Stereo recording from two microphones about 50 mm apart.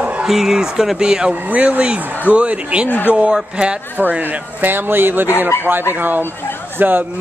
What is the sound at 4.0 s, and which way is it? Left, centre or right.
A man's voice, right.